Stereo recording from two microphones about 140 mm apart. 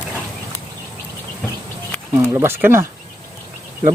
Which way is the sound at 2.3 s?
15° right (ahead or behind).